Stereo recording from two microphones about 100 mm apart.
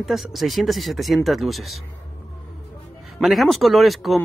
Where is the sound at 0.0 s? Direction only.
Centre (ahead or behind).